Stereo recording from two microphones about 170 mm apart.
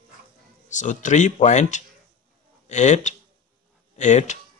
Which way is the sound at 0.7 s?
45° left (ahead or behind).